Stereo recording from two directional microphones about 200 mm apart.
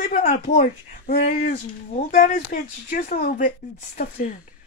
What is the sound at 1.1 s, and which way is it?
Speech, 45° left (ahead or behind).